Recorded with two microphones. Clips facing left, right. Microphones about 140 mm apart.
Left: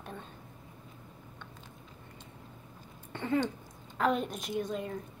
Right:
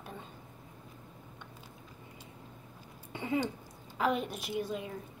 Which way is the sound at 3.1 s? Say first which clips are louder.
Left 2 dB; 10° right (ahead or behind).